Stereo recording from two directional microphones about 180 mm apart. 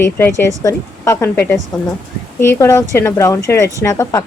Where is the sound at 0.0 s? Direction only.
15° left (ahead or behind).